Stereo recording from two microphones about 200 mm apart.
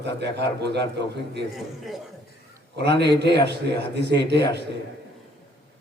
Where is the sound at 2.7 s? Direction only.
55° right (ahead or behind).